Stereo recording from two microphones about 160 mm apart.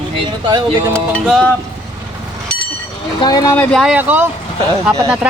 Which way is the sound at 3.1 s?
25° left (ahead or behind).